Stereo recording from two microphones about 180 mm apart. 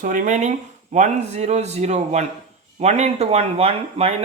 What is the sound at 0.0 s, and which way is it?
Speech, 45° right (ahead or behind).